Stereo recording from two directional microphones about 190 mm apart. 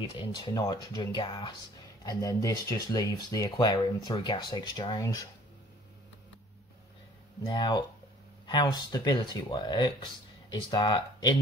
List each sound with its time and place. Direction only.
0.0 s speech: 20° left (ahead or behind)
7.4 s speech: 25° left (ahead or behind)